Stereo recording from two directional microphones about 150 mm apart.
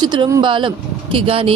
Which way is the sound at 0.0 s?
30° right (ahead or behind).